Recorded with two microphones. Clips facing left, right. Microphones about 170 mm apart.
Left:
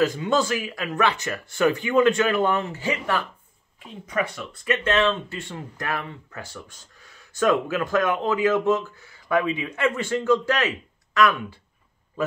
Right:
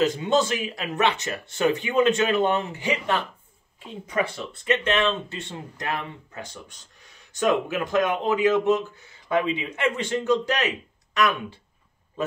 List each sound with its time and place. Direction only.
0.0 s speech: 20° right (ahead or behind)
3.8 s speech: 30° right (ahead or behind)